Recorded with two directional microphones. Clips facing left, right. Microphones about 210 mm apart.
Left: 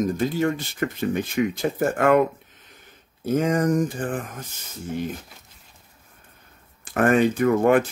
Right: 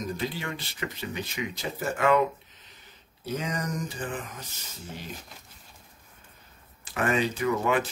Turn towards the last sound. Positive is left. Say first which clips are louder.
# left 8 dB
turn(degrees=50)  # may be behind; listen again after turning